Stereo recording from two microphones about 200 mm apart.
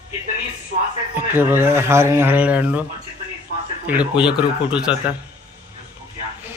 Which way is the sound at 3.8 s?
5° right (ahead or behind).